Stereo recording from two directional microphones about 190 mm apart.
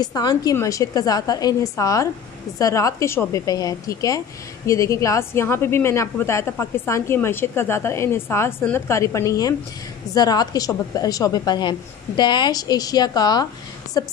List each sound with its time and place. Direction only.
0.0 s a woman's voice: 20° left (ahead or behind)